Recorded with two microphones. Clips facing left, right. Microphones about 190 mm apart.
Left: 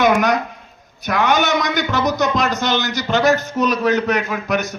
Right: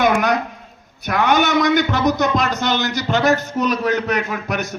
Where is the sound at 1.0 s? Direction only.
50° right (ahead or behind).